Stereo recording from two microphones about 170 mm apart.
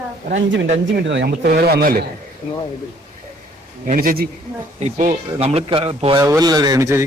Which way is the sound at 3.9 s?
55° right (ahead or behind).